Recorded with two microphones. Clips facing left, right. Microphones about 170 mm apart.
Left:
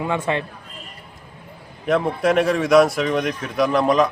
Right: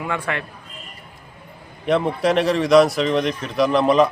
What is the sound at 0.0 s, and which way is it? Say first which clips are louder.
Speech: left 3 dB; 20° left (ahead or behind).